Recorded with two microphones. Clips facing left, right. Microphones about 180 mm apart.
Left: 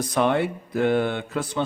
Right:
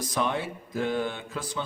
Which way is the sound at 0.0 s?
60° left (ahead or behind).